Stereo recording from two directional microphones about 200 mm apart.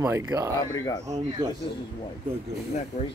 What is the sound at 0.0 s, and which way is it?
Speech, 15° right (ahead or behind).